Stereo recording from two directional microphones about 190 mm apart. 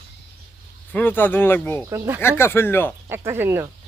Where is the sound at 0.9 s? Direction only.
10° left (ahead or behind).